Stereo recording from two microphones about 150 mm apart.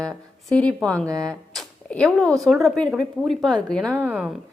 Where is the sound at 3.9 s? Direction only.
10° right (ahead or behind).